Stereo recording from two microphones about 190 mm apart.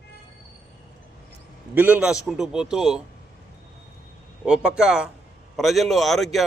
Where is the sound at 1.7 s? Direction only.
10° right (ahead or behind).